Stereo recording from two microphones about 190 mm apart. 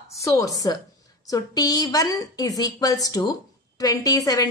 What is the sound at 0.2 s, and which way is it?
A woman's voice, 20° left (ahead or behind).